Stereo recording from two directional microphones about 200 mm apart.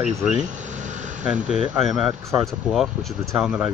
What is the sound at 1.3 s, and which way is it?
Speech, 5° right (ahead or behind).